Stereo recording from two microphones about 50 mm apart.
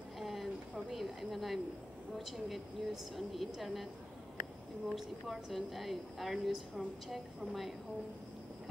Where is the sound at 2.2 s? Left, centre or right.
Centre.